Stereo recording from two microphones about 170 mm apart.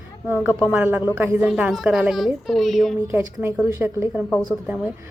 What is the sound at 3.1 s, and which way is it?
A woman's voice, 15° right (ahead or behind).